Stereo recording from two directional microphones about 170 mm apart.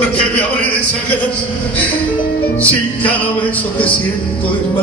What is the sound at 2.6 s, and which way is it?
Music, 10° left (ahead or behind).